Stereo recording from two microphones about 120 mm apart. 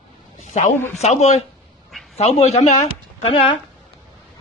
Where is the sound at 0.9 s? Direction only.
70° left (ahead or behind).